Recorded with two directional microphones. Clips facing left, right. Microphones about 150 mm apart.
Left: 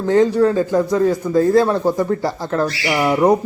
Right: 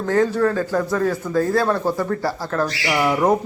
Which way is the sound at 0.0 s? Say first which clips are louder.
Left 4 dB; 20° left (ahead or behind).